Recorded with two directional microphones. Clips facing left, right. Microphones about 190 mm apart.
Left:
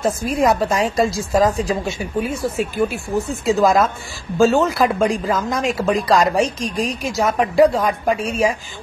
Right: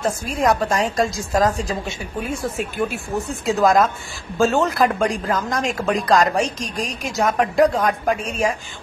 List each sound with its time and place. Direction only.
0.4 s speech: 5° left (ahead or behind)
8.2 s a woman's voice: 35° left (ahead or behind)